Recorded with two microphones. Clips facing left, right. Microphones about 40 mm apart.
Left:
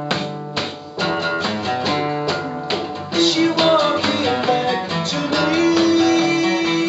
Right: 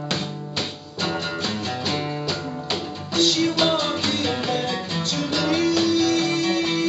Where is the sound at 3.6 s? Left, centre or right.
Centre.